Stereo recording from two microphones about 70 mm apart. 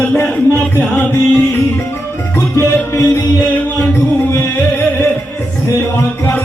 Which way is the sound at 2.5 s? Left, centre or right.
Left.